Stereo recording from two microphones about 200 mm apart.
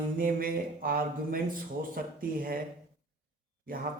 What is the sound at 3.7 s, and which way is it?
Speech, 45° right (ahead or behind).